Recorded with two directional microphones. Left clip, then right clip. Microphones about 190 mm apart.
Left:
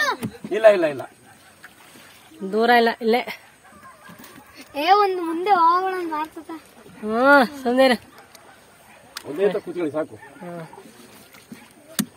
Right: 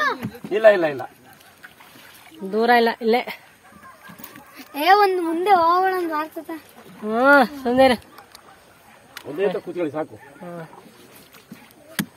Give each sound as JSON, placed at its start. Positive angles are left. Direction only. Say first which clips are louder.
{"t": 0.5, "sound": "speech", "louder": "even", "side_deg": 15}
{"t": 2.5, "sound": "speech", "louder": "even", "side_deg": 0}
{"t": 4.7, "sound": "speech", "louder": "right 2 dB", "side_deg": -65}
{"t": 7.1, "sound": "speech", "louder": "even", "side_deg": 0}
{"t": 9.4, "sound": "speech", "louder": "left 1 dB", "side_deg": 0}